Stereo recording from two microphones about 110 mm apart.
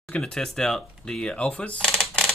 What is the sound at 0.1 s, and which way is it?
Speech, 5° left (ahead or behind).